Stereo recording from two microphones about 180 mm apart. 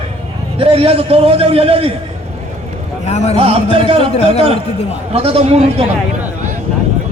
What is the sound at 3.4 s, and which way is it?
Speech, 30° right (ahead or behind).